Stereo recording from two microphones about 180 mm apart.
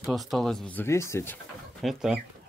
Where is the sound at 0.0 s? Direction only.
Centre (ahead or behind).